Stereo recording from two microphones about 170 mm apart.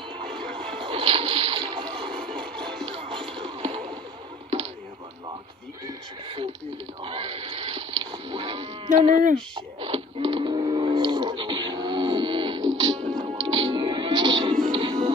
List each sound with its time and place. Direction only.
0.6 s splash: 35° right (ahead or behind)
3.3 s music: 35° right (ahead or behind)
5.9 s a sound: 30° right (ahead or behind)
7.0 s livestock: 30° right (ahead or behind)
9.8 s a sound: 35° right (ahead or behind)
13.0 s music: 45° right (ahead or behind)
13.5 s music: 30° right (ahead or behind)